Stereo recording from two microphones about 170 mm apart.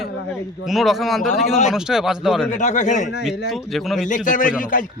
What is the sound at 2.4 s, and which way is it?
Speech, 45° left (ahead or behind).